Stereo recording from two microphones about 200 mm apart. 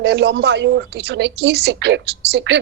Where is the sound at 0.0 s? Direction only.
60° right (ahead or behind).